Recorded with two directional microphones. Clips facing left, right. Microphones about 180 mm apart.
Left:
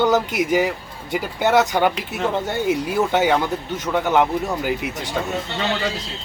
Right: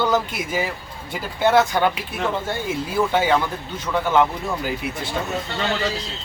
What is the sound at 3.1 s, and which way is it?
Speech, 15° left (ahead or behind).